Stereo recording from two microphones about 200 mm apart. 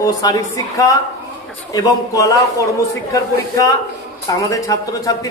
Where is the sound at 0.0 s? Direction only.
20° left (ahead or behind).